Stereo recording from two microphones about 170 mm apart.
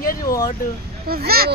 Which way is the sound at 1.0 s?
65° right (ahead or behind).